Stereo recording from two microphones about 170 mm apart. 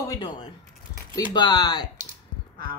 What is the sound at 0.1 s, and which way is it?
Speech, 25° left (ahead or behind).